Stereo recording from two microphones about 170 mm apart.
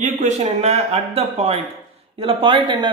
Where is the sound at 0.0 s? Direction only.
45° right (ahead or behind).